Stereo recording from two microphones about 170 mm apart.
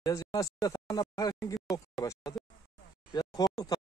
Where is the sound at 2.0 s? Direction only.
20° left (ahead or behind).